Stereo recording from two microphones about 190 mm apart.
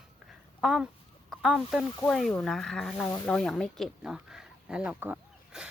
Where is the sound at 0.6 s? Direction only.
Centre (ahead or behind).